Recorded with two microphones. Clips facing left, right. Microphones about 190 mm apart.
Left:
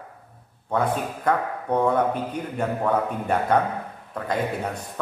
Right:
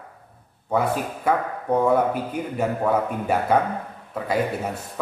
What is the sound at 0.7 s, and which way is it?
A man's voice, 5° right (ahead or behind).